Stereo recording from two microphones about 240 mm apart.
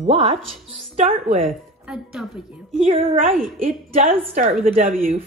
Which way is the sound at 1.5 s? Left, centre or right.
Centre.